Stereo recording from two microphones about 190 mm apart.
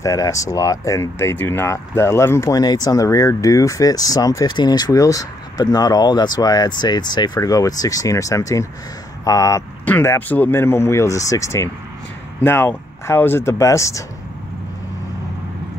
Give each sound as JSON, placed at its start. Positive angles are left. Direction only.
{"t": 0.0, "sound": "speech", "side_deg": 15}